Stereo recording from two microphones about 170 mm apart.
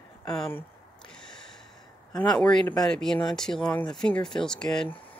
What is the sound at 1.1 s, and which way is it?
Gasp, 5° left (ahead or behind).